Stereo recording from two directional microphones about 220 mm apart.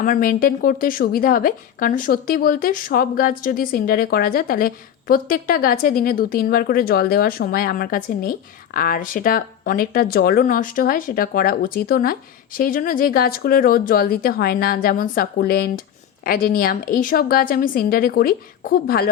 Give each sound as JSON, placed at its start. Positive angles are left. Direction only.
{"t": 0.0, "sound": "a woman's voice", "side_deg": 40}